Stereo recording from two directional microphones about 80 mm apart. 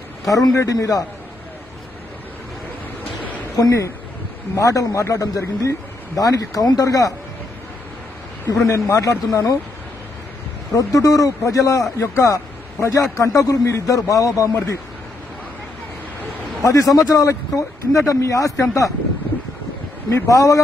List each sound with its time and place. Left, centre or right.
0.2 s a man's voice: left
3.5 s a man's voice: left
8.6 s speech: left
10.7 s a man's voice: left
16.6 s a man's voice: left
20.1 s speech: left